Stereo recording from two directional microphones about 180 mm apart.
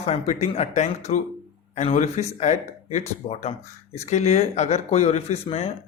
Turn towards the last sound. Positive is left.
turn(degrees=35)  # may be behind; listen again after turning